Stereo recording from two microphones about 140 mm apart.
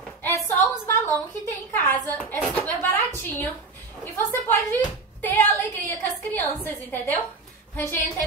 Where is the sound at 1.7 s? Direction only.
15° left (ahead or behind).